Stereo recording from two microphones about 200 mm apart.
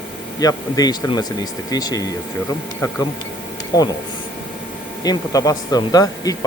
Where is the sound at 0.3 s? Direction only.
20° left (ahead or behind).